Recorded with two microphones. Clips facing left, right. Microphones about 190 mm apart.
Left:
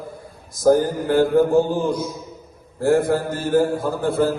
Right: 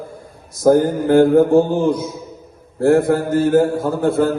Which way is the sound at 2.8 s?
55° right (ahead or behind).